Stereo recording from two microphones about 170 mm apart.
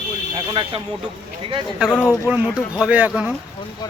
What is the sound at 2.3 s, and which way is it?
Speech, 5° right (ahead or behind).